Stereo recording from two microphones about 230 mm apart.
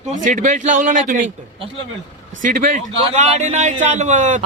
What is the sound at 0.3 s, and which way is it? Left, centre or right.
Speech, right.